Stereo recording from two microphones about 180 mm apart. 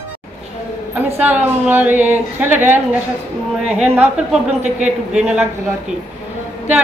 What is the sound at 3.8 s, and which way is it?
Speech, 5° right (ahead or behind).